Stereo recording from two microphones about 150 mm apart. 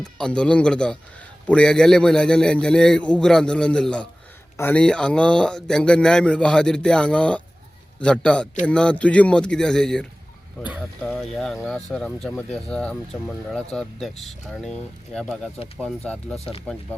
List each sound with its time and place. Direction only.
0.0 s a man's voice: 5° left (ahead or behind)
16.4 s speech: 40° left (ahead or behind)